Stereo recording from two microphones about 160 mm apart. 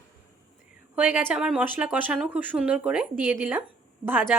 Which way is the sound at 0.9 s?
10° right (ahead or behind).